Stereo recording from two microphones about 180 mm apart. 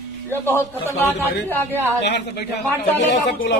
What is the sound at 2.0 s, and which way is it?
Speech, 70° left (ahead or behind).